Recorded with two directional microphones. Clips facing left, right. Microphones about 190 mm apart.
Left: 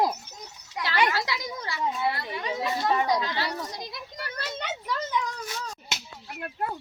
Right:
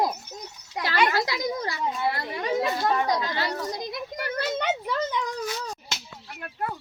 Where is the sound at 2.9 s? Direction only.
10° left (ahead or behind).